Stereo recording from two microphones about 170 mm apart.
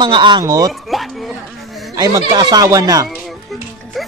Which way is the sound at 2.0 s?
20° right (ahead or behind).